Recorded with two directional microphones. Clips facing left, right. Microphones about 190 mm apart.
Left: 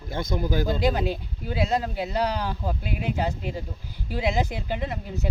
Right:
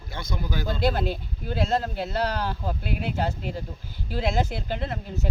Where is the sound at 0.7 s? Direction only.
15° left (ahead or behind).